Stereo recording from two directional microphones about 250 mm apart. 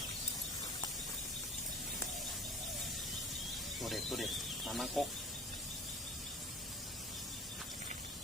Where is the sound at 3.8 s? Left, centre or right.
Centre.